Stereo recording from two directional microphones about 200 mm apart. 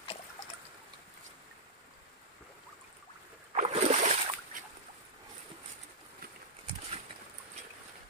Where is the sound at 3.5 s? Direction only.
35° right (ahead or behind).